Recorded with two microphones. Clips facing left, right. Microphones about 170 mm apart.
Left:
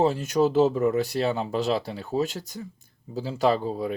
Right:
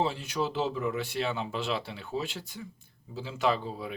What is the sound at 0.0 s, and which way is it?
Speech, 45° left (ahead or behind).